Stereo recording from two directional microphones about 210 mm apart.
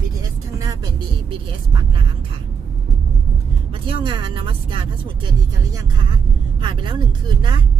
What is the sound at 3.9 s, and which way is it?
Speech, 20° right (ahead or behind).